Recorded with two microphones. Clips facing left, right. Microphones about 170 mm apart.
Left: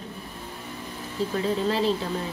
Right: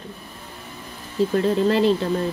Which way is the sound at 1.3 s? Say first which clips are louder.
Right 6 dB; 65° right (ahead or behind).